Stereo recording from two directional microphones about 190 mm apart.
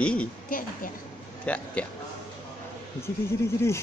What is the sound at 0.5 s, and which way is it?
Speech, 45° left (ahead or behind).